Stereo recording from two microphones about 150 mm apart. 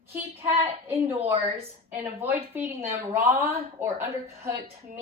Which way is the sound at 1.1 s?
35° right (ahead or behind).